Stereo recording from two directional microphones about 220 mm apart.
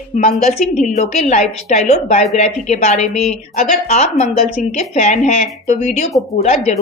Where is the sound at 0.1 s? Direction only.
35° left (ahead or behind).